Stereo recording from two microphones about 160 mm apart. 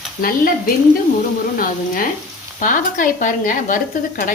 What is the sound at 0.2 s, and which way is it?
Speech, 60° left (ahead or behind).